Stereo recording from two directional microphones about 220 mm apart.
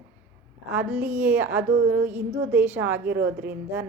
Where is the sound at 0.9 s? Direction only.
10° right (ahead or behind).